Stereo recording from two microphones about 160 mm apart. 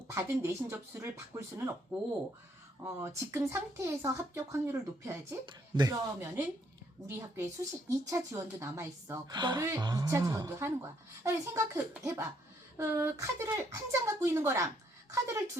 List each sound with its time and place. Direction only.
0.1 s speech: 15° right (ahead or behind)
5.5 s speech: 25° right (ahead or behind)
6.1 s a woman's voice: 15° right (ahead or behind)